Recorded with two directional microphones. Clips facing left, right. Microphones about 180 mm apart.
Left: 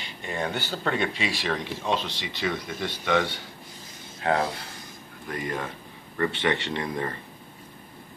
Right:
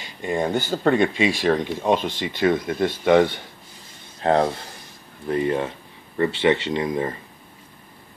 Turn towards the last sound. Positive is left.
turn(degrees=-15)  # may be behind; listen again after turning